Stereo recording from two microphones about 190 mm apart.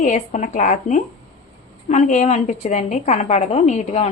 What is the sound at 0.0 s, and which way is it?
A woman's voice, 40° left (ahead or behind).